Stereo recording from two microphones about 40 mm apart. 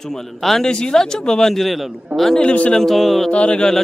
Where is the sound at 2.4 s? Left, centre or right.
Left.